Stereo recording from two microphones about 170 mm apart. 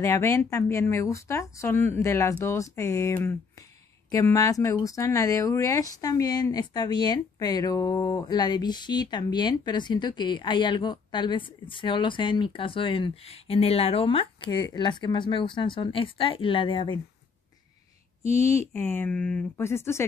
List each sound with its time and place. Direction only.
0.0 s speech: 20° left (ahead or behind)
18.4 s speech: 15° left (ahead or behind)